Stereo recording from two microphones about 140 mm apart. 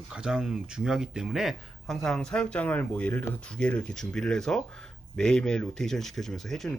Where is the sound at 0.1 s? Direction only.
5° right (ahead or behind).